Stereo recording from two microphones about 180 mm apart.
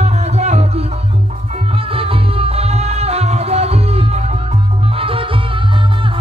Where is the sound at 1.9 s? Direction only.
30° right (ahead or behind).